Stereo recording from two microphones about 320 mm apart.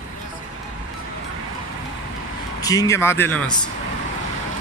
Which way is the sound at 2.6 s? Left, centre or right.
Centre.